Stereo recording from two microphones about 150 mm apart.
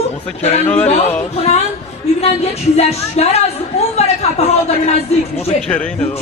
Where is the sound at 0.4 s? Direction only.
45° left (ahead or behind).